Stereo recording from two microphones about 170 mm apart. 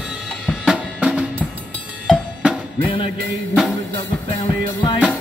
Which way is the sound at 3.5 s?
Centre (ahead or behind).